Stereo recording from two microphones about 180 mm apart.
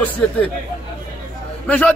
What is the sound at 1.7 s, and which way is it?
Speech, 5° left (ahead or behind).